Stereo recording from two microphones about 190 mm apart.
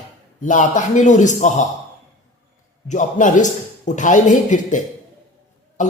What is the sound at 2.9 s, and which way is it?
A man's voice, 40° left (ahead or behind).